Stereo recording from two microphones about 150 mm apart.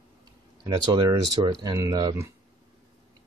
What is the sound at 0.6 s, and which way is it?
Speech, 30° right (ahead or behind).